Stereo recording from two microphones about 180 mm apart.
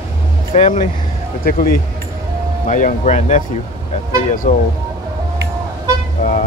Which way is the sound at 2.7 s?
40° left (ahead or behind).